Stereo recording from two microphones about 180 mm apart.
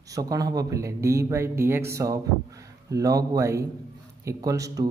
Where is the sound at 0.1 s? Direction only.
20° right (ahead or behind).